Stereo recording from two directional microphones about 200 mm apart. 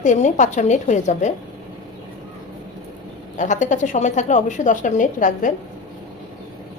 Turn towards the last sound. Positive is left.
turn(degrees=40)  # may be behind; listen again after turning